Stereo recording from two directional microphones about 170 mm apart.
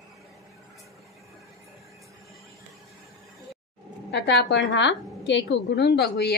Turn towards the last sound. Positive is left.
turn(degrees=90)